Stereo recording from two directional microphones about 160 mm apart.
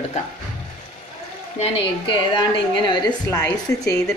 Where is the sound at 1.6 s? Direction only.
30° left (ahead or behind).